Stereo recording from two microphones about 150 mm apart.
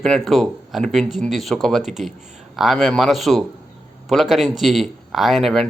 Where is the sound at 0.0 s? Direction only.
Centre (ahead or behind).